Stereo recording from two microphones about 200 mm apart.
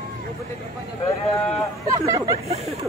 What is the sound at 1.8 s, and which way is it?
Chatter, 15° right (ahead or behind).